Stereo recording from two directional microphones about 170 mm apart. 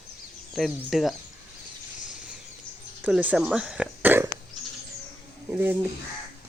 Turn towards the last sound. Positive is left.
turn(degrees=-10)  # may be behind; listen again after turning